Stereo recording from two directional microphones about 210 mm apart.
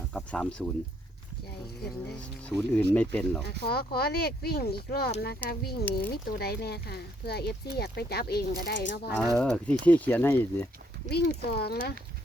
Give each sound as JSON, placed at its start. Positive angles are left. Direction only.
{"t": 0.1, "sound": "speech", "side_deg": 5}
{"t": 2.5, "sound": "speech", "side_deg": 5}
{"t": 3.7, "sound": "speech", "side_deg": 50}
{"t": 9.3, "sound": "speech", "side_deg": 5}
{"t": 11.1, "sound": "speech", "side_deg": 50}